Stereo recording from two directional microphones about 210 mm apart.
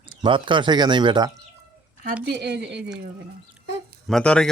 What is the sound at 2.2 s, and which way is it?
Speech, 50° right (ahead or behind).